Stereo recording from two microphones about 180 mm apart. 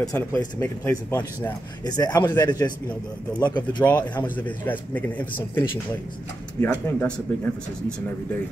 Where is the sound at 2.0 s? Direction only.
20° left (ahead or behind).